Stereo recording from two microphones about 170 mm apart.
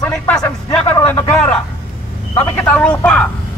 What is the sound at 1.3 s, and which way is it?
A man's voice, 5° left (ahead or behind).